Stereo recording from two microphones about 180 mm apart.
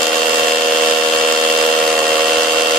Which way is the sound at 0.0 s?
Centre (ahead or behind).